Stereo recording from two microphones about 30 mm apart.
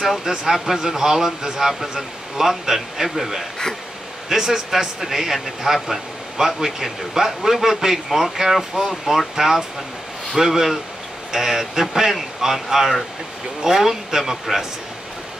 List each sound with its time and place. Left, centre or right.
0.2 s speech: right